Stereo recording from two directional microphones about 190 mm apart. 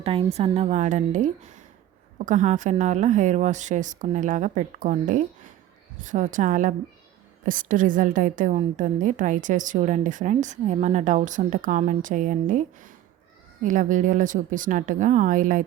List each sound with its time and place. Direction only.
0.0 s a woman's voice: 30° right (ahead or behind)